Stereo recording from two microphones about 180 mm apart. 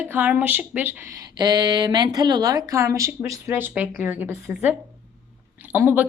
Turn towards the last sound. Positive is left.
turn(degrees=-10)  # may be behind; listen again after turning